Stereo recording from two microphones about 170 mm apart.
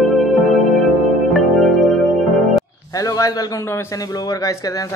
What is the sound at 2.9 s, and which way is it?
A man's voice, 20° left (ahead or behind).